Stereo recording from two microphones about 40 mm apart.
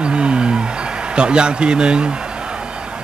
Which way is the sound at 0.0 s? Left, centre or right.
Right.